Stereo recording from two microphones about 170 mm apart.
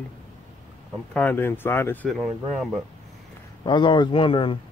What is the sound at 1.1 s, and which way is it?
Speech, 10° left (ahead or behind).